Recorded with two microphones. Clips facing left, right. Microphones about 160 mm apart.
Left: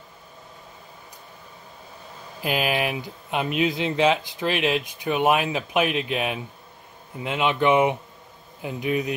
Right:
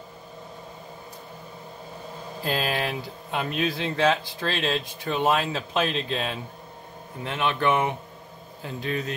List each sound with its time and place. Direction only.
2.4 s speech: 15° left (ahead or behind)